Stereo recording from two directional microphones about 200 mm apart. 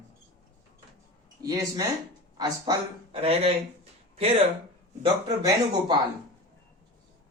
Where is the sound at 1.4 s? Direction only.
20° right (ahead or behind).